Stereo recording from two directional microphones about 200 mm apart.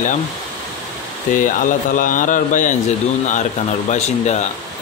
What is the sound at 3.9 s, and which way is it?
Speech, 35° left (ahead or behind).